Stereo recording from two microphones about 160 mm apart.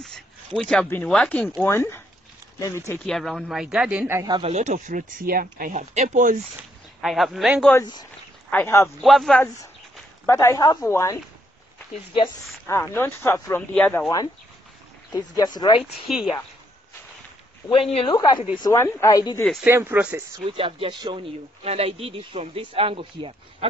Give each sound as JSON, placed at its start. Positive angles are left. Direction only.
{"t": 0.6, "sound": "speech", "side_deg": 5}
{"t": 3.1, "sound": "speech", "side_deg": 0}
{"t": 4.1, "sound": "speech", "side_deg": -20}
{"t": 4.4, "sound": "speech", "side_deg": -45}
{"t": 7.0, "sound": "speech", "side_deg": 0}
{"t": 8.5, "sound": "speech", "side_deg": 15}
{"t": 9.0, "sound": "speech", "side_deg": 0}
{"t": 10.2, "sound": "speech", "side_deg": 15}
{"t": 12.6, "sound": "speech", "side_deg": 15}
{"t": 15.3, "sound": "speech", "side_deg": 25}
{"t": 16.1, "sound": "speech", "side_deg": 0}
{"t": 17.9, "sound": "speech", "side_deg": 30}
{"t": 19.6, "sound": "speech", "side_deg": -15}
{"t": 20.5, "sound": "speech", "side_deg": -35}